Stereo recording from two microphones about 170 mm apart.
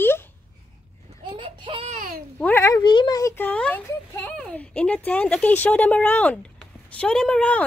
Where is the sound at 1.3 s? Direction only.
30° right (ahead or behind).